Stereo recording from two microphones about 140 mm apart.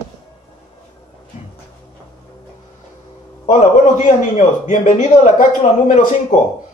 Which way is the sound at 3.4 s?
60° left (ahead or behind).